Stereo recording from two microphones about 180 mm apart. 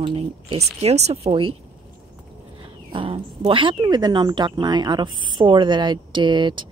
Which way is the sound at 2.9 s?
30° right (ahead or behind).